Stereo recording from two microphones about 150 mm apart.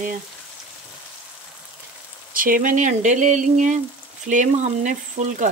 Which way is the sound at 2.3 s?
65° right (ahead or behind).